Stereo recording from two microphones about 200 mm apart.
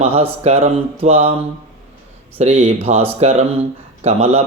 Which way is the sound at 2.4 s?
35° right (ahead or behind).